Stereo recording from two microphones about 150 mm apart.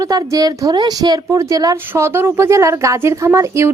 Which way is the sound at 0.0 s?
25° right (ahead or behind).